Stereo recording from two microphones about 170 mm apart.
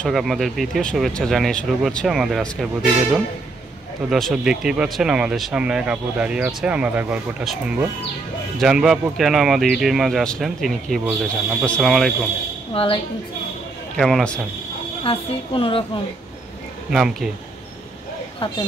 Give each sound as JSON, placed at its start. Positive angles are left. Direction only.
{"t": 0.0, "sound": "speech", "side_deg": 0}
{"t": 12.7, "sound": "a woman's voice", "side_deg": 35}
{"t": 13.9, "sound": "speech", "side_deg": 5}
{"t": 15.0, "sound": "a woman's voice", "side_deg": 30}
{"t": 16.9, "sound": "speech", "side_deg": -5}